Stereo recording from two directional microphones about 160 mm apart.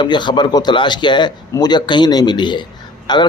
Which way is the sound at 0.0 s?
30° left (ahead or behind).